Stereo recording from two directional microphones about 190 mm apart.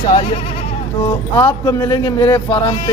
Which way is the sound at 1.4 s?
20° left (ahead or behind).